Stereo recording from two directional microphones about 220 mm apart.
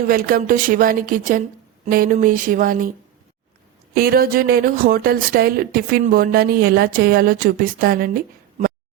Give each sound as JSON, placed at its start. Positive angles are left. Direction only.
{"t": 0.0, "sound": "speech", "side_deg": -40}
{"t": 3.9, "sound": "speech", "side_deg": -45}